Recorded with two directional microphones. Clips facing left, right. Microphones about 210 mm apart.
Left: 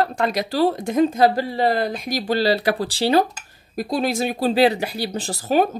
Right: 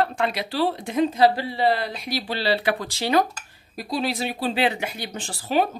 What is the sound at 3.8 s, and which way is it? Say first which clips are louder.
Speech: left 4 dB; 50° left (ahead or behind).